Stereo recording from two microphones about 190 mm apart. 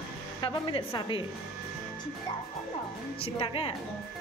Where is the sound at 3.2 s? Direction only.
30° left (ahead or behind).